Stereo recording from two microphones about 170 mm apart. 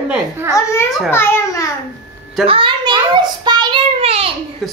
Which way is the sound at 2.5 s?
30° right (ahead or behind).